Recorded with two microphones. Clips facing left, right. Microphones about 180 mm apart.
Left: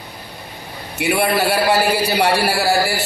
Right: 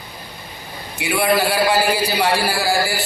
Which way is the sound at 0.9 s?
65° left (ahead or behind).